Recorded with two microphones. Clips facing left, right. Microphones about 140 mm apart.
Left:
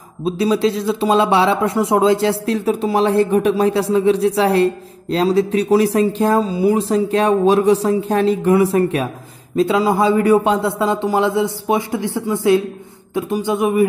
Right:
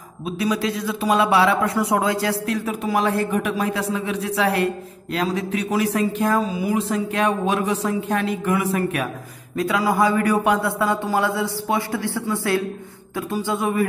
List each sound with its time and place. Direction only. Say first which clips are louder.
0.2 s speech: left 7 dB; 30° left (ahead or behind)